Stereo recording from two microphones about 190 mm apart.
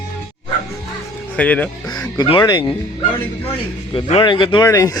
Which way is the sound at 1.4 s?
5° left (ahead or behind).